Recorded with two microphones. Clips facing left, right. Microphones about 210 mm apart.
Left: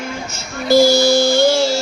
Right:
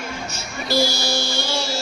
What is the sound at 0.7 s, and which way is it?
Music, 45° left (ahead or behind).